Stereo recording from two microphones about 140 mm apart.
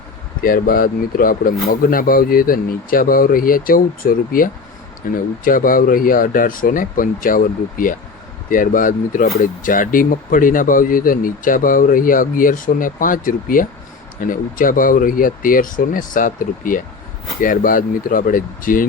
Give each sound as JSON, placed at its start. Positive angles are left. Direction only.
{"t": 0.4, "sound": "speech", "side_deg": 90}